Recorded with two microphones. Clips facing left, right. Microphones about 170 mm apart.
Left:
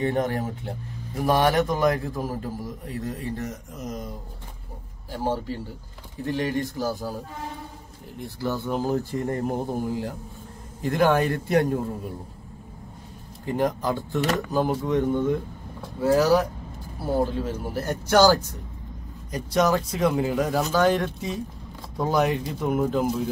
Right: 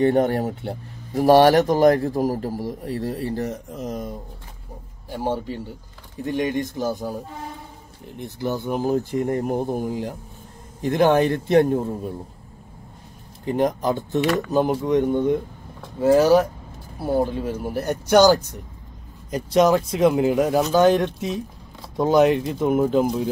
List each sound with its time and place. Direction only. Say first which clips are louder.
0.0 s speech: right 6 dB; 35° right (ahead or behind)
5.1 s a man's voice: right 2 dB; 15° right (ahead or behind)
8.2 s a man's voice: right 2 dB; 20° right (ahead or behind)
13.5 s a man's voice: right 3 dB; 20° right (ahead or behind)